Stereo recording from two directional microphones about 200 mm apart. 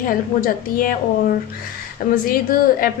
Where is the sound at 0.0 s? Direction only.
45° left (ahead or behind).